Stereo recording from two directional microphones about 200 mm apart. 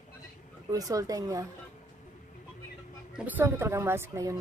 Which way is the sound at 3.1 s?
10° right (ahead or behind).